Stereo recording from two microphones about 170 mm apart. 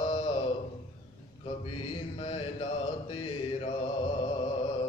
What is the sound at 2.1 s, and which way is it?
Mantra, 35° left (ahead or behind).